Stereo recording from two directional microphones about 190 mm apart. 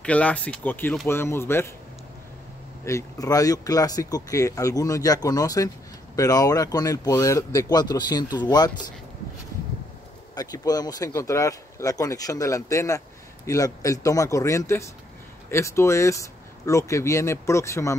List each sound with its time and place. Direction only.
0.0 s speech: 5° left (ahead or behind)
2.8 s speech: 15° left (ahead or behind)
10.3 s speech: 20° left (ahead or behind)